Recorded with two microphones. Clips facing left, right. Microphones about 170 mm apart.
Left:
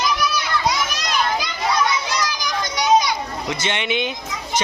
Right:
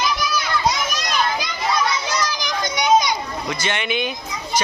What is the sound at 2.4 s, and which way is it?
Children playing, 20° right (ahead or behind).